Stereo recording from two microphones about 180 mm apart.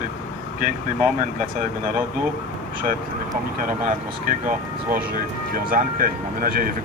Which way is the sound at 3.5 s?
50° right (ahead or behind).